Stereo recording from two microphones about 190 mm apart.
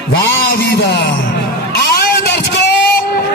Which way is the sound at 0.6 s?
60° left (ahead or behind).